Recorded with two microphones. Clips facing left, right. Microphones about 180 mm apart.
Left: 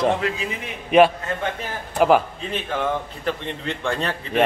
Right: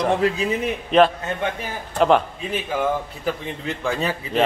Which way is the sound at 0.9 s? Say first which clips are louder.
Left 1 dB; 10° left (ahead or behind).